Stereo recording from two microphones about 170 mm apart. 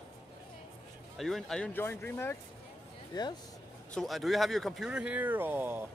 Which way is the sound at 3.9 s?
Centre (ahead or behind).